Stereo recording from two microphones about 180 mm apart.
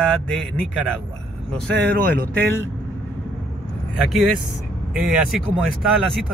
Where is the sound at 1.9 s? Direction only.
55° right (ahead or behind).